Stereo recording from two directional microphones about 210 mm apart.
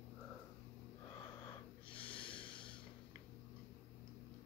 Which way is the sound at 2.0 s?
25° left (ahead or behind).